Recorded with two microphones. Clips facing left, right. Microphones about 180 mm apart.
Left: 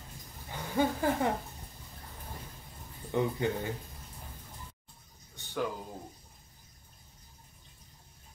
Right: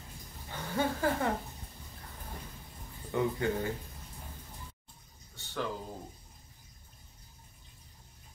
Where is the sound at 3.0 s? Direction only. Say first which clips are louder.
Left 1 dB; 20° left (ahead or behind).